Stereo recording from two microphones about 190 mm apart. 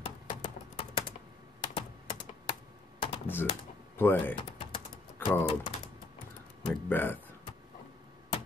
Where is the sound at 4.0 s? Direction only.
10° left (ahead or behind).